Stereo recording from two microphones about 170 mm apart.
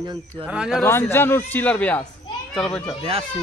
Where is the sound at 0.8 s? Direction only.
15° left (ahead or behind).